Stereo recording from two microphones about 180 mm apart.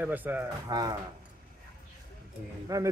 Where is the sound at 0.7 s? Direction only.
20° right (ahead or behind).